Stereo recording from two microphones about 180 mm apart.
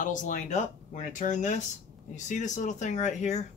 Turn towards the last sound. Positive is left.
turn(degrees=40)  # may be behind; listen again after turning